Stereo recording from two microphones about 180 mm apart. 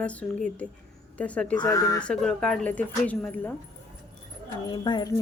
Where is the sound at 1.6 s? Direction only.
20° left (ahead or behind).